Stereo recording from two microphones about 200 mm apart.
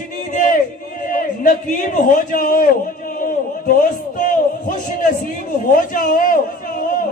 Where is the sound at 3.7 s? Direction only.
40° left (ahead or behind).